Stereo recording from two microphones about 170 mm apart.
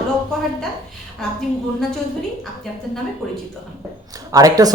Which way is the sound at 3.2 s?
Centre (ahead or behind).